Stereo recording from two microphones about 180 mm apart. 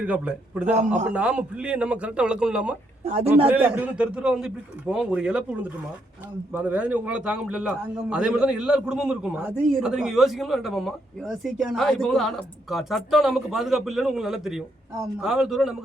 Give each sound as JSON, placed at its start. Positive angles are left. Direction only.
{"t": 0.0, "sound": "a man's voice", "side_deg": -10}
{"t": 0.8, "sound": "a man's voice", "side_deg": -40}
{"t": 1.0, "sound": "a man's voice", "side_deg": -5}
{"t": 3.0, "sound": "a man's voice", "side_deg": -35}
{"t": 3.4, "sound": "a man's voice", "side_deg": -10}